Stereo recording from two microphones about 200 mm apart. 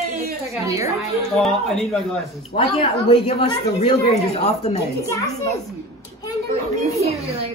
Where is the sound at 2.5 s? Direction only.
30° left (ahead or behind).